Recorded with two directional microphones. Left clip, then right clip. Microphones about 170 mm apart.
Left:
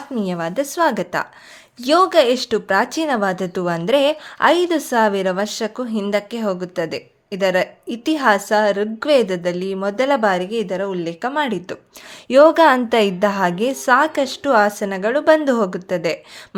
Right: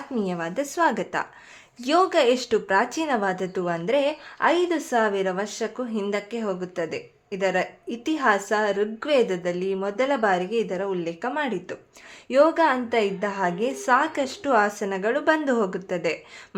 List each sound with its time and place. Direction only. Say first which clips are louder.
0.2 s speech: left 6 dB; 30° left (ahead or behind)
12.3 s speech: left 8 dB; 45° left (ahead or behind); by 16.6 s 25° left (ahead or behind)